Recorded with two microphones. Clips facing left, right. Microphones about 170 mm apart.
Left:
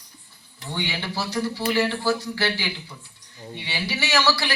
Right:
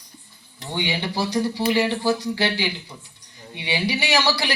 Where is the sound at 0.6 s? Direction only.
15° right (ahead or behind).